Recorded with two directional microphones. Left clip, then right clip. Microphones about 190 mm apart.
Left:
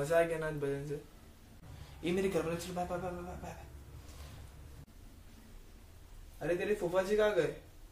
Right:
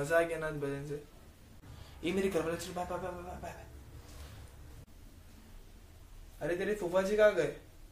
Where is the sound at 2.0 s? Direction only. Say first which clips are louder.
Right 1 dB; 10° right (ahead or behind).